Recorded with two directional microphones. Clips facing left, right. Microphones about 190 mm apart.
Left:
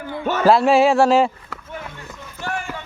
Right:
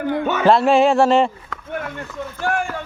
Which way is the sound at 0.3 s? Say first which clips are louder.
Left 1 dB; centre (ahead or behind).